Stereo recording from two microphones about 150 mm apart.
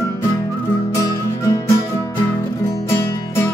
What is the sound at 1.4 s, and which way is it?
Music, 20° left (ahead or behind).